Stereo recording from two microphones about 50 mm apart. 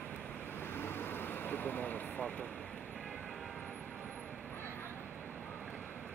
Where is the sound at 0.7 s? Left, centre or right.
Left.